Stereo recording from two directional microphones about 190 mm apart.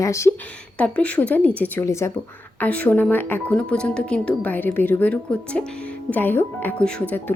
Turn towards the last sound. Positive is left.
turn(degrees=5)  # may be behind; listen again after turning